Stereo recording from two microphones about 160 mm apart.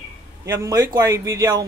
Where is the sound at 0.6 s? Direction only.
25° right (ahead or behind).